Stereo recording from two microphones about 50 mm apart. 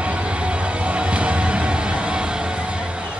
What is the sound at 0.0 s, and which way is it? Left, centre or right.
Music, right.